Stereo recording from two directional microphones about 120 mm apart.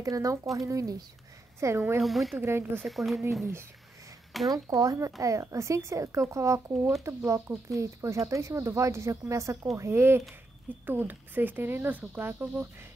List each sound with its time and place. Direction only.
0.0 s speech: 30° right (ahead or behind)
2.0 s speech: centre (ahead or behind)
2.4 s speech: 20° right (ahead or behind)
2.8 s speech: centre (ahead or behind)
4.5 s speech: 30° right (ahead or behind)